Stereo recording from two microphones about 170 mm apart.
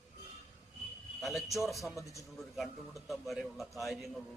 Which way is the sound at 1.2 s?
Centre (ahead or behind).